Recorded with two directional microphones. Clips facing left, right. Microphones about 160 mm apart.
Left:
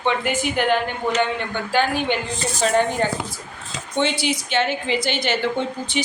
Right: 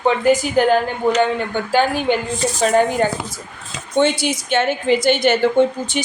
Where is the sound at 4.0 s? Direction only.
45° right (ahead or behind).